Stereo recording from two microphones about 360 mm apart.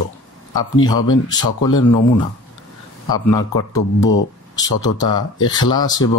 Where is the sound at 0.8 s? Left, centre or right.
Centre.